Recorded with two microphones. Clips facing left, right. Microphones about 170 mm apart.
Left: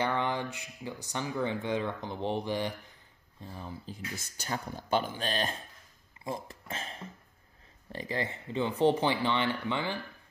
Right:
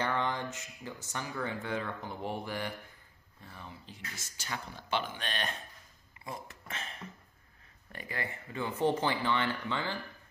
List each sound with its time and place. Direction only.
0.0 s a sound: 15° left (ahead or behind)
1.0 s speech: 20° left (ahead or behind)
3.4 s speech: 35° left (ahead or behind); by 9.9 s 15° left (ahead or behind)